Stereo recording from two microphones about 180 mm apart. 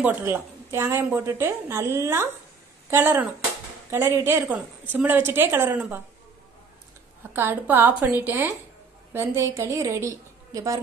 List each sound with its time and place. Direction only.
0.0 s a woman's voice: 10° right (ahead or behind)
7.3 s a woman's voice: 10° right (ahead or behind)